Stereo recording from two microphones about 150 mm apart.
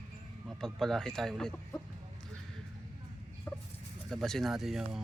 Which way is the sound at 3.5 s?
15° left (ahead or behind).